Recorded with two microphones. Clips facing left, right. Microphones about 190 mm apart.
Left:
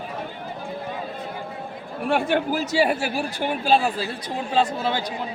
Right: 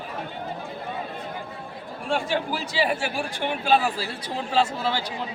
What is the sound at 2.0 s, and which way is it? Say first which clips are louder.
Speech: left 4 dB; 60° left (ahead or behind).